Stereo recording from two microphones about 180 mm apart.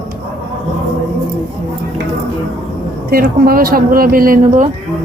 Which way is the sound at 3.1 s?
55° right (ahead or behind).